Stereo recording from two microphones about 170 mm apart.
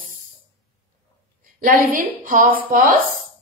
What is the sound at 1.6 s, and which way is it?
A woman's voice, 55° right (ahead or behind).